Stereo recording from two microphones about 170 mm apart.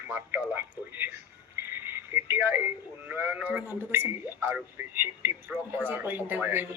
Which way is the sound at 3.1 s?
10° right (ahead or behind).